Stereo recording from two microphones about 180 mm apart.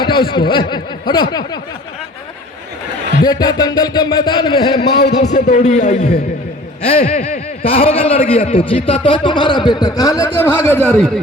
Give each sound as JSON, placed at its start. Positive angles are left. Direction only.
{"t": 0.0, "sound": "a man's voice", "side_deg": 25}
{"t": 3.2, "sound": "a man's voice", "side_deg": 20}
{"t": 4.9, "sound": "a man's voice", "side_deg": 70}
{"t": 5.2, "sound": "a man's voice", "side_deg": 40}